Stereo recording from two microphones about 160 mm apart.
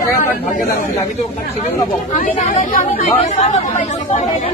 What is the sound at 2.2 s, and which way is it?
Speech, 55° left (ahead or behind).